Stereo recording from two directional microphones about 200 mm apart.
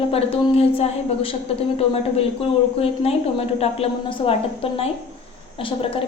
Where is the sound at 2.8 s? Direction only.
30° left (ahead or behind).